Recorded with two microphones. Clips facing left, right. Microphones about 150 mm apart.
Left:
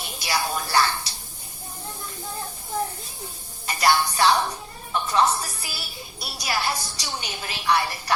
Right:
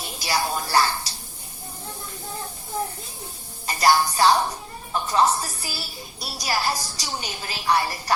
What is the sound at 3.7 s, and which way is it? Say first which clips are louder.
Music: right 2 dB; 35° right (ahead or behind).